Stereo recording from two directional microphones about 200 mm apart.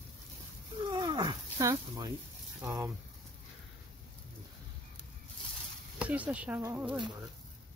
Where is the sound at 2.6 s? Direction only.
15° right (ahead or behind).